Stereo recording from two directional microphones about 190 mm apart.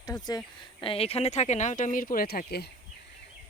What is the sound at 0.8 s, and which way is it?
Speech, 30° left (ahead or behind).